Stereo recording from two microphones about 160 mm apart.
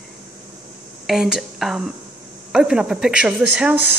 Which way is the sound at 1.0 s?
5° right (ahead or behind).